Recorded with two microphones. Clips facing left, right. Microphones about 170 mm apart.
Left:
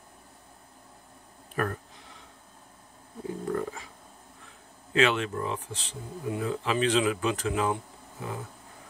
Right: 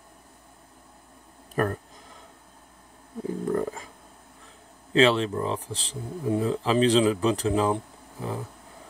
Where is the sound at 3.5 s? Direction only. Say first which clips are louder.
Right 4 dB; 40° right (ahead or behind).